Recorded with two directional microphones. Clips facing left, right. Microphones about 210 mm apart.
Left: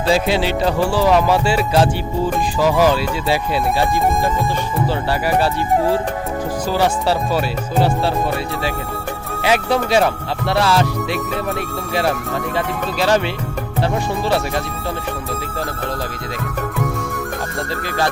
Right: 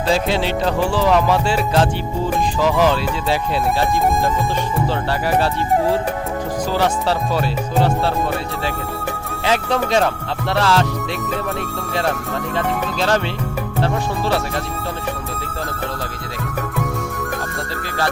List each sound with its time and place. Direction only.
0.1 s music: 10° left (ahead or behind)
6.7 s music: 10° left (ahead or behind)
9.4 s music: 10° left (ahead or behind)
12.5 s music: 10° left (ahead or behind)